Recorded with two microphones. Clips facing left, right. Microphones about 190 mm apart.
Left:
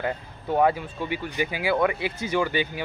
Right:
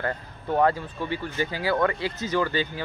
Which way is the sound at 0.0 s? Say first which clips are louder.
Left 1 dB; 10° left (ahead or behind).